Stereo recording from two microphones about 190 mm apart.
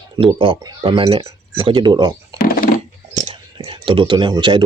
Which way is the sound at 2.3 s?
50° left (ahead or behind).